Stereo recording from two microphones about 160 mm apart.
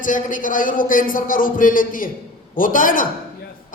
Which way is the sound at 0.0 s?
55° left (ahead or behind).